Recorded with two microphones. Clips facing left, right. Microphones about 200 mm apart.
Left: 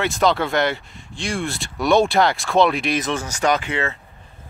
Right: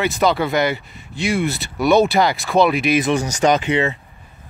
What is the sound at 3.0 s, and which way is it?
Speech, 15° right (ahead or behind).